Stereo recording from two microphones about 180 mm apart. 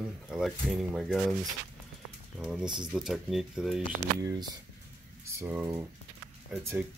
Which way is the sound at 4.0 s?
20° right (ahead or behind).